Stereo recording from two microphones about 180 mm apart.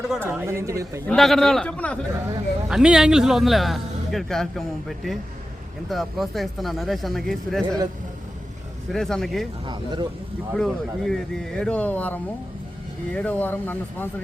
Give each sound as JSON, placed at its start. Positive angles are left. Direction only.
{"t": 0.1, "sound": "speech", "side_deg": -10}
{"t": 1.0, "sound": "a man's voice", "side_deg": 0}
{"t": 2.6, "sound": "a man's voice", "side_deg": -5}
{"t": 8.9, "sound": "a man's voice", "side_deg": 0}
{"t": 9.6, "sound": "speech", "side_deg": -25}
{"t": 10.5, "sound": "a man's voice", "side_deg": 0}